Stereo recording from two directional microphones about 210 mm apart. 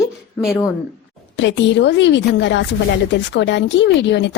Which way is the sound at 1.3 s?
60° left (ahead or behind).